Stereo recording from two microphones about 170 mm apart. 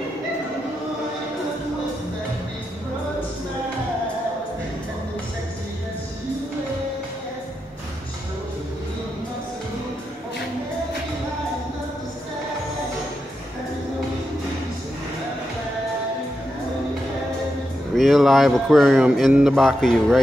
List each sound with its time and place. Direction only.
17.9 s speech: centre (ahead or behind)